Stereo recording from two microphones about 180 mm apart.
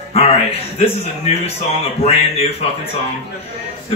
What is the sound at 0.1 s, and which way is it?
A man's voice, 35° left (ahead or behind).